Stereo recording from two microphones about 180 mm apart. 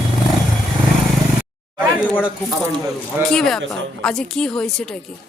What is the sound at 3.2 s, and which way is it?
A woman's voice, centre (ahead or behind).